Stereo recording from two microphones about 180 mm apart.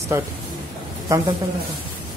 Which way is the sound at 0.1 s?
15° right (ahead or behind).